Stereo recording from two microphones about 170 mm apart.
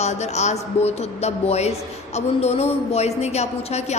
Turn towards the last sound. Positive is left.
turn(degrees=40)  # may be behind; listen again after turning